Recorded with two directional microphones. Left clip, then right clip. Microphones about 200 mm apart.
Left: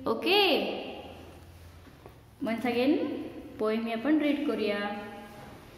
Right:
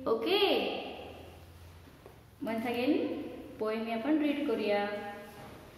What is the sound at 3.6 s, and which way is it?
A woman's voice, 55° left (ahead or behind).